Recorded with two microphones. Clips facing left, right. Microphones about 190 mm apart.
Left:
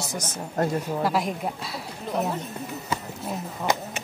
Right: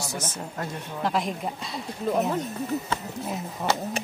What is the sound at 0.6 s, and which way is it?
Speech, 40° left (ahead or behind).